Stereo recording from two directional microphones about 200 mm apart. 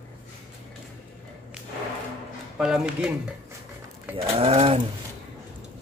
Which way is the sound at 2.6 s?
5° right (ahead or behind).